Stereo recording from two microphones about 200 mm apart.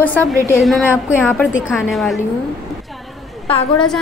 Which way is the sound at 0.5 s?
Centre (ahead or behind).